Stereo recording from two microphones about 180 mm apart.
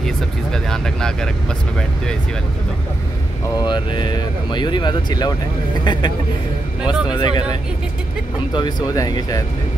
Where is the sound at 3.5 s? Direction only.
25° left (ahead or behind).